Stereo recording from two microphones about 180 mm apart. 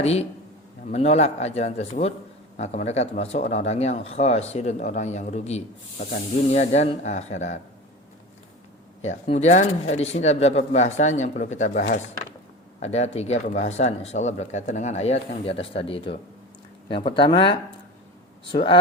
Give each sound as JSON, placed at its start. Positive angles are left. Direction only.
{"t": 0.0, "sound": "speech", "side_deg": 35}
{"t": 9.0, "sound": "speech", "side_deg": 40}